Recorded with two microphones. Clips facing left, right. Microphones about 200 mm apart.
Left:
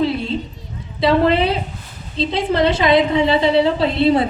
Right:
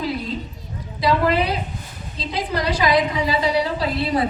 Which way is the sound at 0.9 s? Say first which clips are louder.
Left 4 dB; 25° left (ahead or behind).